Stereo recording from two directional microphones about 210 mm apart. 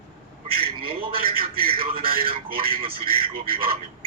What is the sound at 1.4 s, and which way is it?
A man's voice, 45° right (ahead or behind).